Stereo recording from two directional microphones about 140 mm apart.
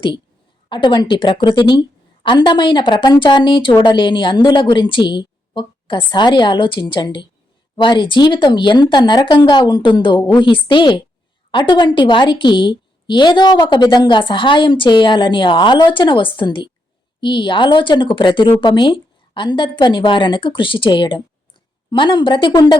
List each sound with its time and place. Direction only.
0.7 s a woman's voice: 35° left (ahead or behind)